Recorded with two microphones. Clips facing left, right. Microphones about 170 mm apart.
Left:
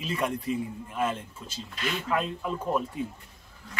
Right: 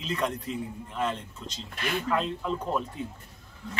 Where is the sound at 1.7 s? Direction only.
50° right (ahead or behind).